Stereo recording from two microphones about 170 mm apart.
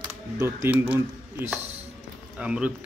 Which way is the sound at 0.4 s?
15° right (ahead or behind).